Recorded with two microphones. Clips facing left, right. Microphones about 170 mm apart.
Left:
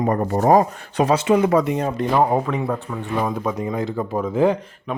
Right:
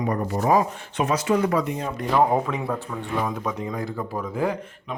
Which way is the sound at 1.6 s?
80° left.